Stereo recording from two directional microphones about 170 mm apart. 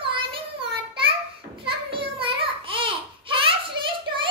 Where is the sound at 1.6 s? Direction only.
30° right (ahead or behind).